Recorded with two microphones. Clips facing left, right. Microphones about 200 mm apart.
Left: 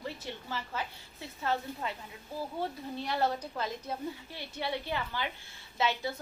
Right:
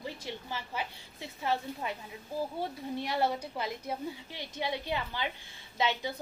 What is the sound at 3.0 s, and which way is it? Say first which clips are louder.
A woman's voice: even; 10° right (ahead or behind).